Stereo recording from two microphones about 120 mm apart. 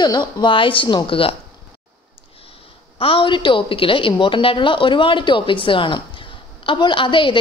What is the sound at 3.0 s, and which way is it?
A woman's voice, 45° left (ahead or behind).